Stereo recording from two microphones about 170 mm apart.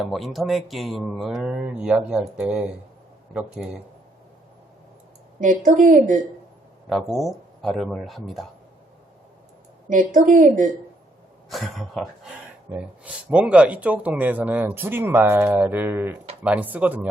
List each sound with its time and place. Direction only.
0.0 s speech: centre (ahead or behind)
5.4 s speech: 50° right (ahead or behind)
6.9 s speech: centre (ahead or behind)
9.9 s speech: 50° right (ahead or behind)
11.4 s speech: centre (ahead or behind)